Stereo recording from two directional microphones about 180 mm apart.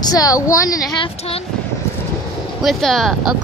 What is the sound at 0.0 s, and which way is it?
A woman's voice, 20° left (ahead or behind).